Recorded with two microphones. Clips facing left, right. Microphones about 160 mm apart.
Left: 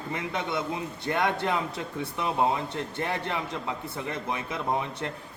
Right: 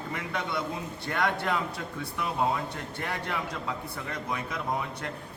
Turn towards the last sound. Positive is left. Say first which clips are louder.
# left 3 dB
turn(degrees=25)  # may be behind; listen again after turning